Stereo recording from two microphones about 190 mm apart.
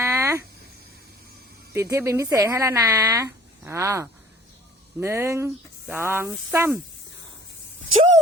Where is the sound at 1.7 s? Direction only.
15° right (ahead or behind).